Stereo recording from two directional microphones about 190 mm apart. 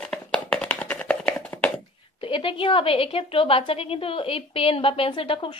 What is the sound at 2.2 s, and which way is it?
A woman's voice, 25° left (ahead or behind).